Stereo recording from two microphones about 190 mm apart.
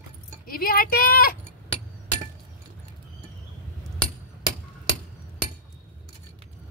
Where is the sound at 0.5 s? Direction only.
50° left (ahead or behind).